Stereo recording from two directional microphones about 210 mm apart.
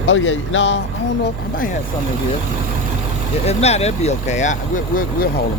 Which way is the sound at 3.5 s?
30° left (ahead or behind).